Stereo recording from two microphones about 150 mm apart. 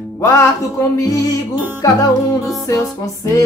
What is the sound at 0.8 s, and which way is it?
Music, 20° left (ahead or behind).